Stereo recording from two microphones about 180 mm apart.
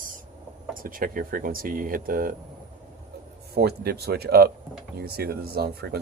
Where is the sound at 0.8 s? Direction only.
50° right (ahead or behind).